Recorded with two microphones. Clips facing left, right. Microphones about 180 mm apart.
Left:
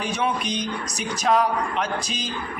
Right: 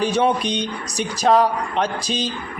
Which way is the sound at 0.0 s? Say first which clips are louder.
Right 7 dB; 30° right (ahead or behind).